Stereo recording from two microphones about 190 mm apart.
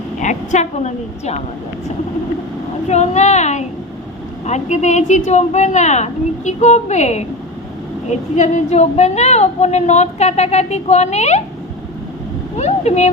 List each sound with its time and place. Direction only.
0.2 s a woman's voice: 40° left (ahead or behind)
2.9 s a woman's voice: 35° left (ahead or behind)
12.5 s a sound: 35° left (ahead or behind)